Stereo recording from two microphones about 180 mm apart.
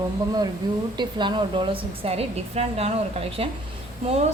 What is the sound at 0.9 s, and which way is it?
A woman's voice, 25° right (ahead or behind).